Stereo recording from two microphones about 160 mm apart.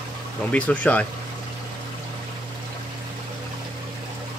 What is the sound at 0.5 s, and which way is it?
Speech, 10° left (ahead or behind).